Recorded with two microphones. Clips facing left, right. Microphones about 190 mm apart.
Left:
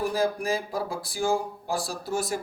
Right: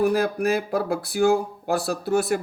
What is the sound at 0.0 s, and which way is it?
Speech, 65° right (ahead or behind).